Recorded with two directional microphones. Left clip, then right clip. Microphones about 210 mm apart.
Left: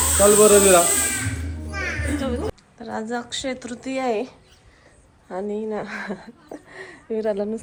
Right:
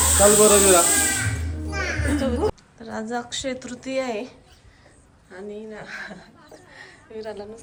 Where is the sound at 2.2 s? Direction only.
10° right (ahead or behind).